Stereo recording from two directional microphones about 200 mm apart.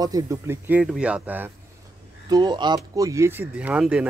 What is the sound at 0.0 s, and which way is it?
Speech, 15° right (ahead or behind).